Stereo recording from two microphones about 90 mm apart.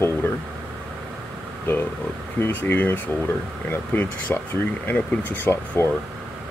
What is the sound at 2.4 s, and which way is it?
Speech, 20° left (ahead or behind).